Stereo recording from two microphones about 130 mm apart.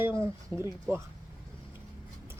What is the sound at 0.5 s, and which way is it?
Speech, 25° left (ahead or behind).